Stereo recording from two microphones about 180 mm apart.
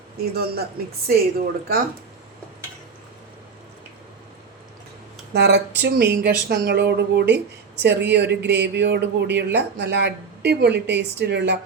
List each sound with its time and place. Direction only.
0.2 s speech: 60° right (ahead or behind)
5.3 s speech: 70° right (ahead or behind)